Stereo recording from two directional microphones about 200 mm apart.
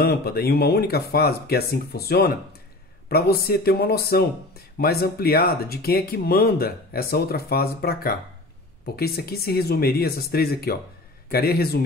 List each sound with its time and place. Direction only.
0.0 s speech: 50° left (ahead or behind)